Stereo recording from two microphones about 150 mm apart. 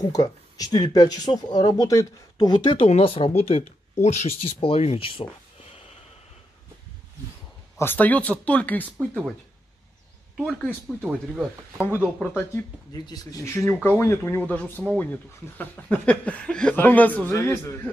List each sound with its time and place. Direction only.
0.1 s speech: 25° left (ahead or behind)
7.8 s speech: 10° left (ahead or behind)
8.8 s speech: 10° right (ahead or behind)
10.3 s speech: centre (ahead or behind)
12.9 s speech: 25° left (ahead or behind)